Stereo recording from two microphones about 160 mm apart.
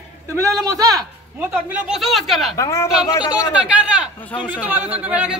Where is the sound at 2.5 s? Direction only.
20° left (ahead or behind).